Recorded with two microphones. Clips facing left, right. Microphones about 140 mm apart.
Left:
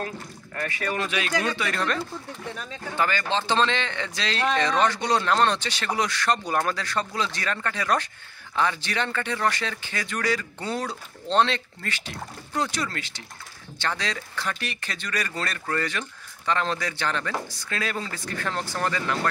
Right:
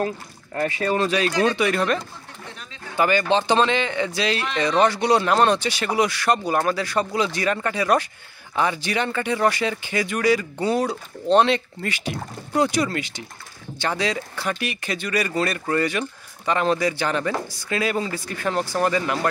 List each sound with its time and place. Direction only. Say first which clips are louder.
0.6 s speech: right 7 dB; 30° right (ahead or behind)
1.6 s speech: right 6 dB; 10° right (ahead or behind)
3.0 s speech: right 6 dB; 15° right (ahead or behind)